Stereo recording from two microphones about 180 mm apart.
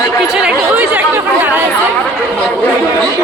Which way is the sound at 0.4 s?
10° right (ahead or behind).